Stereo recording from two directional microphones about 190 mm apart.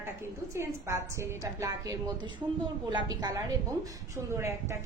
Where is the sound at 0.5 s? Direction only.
15° right (ahead or behind).